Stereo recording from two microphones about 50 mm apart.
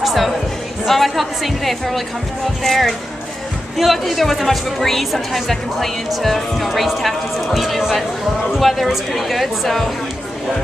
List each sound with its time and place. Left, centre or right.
0.0 s music: centre
0.8 s a woman's voice: centre